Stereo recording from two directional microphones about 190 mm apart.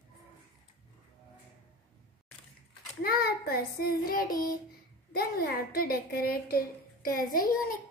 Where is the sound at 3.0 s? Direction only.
55° left (ahead or behind).